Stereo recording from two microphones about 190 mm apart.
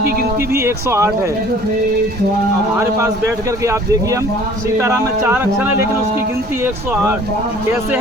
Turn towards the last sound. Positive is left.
turn(degrees=-10)  # may be behind; listen again after turning